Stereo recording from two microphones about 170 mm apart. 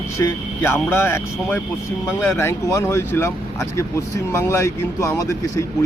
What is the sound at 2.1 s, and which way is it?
Speech, 15° left (ahead or behind).